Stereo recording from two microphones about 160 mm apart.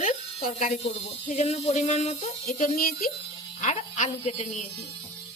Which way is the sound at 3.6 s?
45° left (ahead or behind).